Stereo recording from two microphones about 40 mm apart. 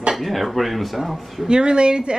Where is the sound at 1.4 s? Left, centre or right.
Right.